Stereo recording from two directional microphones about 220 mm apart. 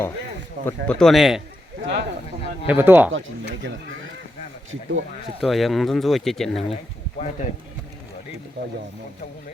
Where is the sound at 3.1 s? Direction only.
60° right (ahead or behind).